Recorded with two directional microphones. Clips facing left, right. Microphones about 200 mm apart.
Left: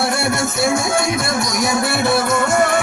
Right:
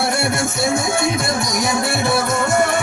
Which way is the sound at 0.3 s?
25° right (ahead or behind).